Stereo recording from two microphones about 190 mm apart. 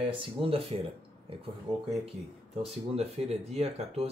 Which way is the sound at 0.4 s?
30° right (ahead or behind).